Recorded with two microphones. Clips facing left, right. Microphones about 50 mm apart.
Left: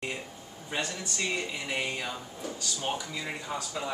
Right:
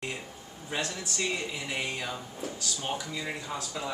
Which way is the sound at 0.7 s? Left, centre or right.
Centre.